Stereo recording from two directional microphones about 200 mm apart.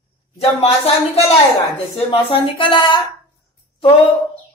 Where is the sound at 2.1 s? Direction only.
25° left (ahead or behind).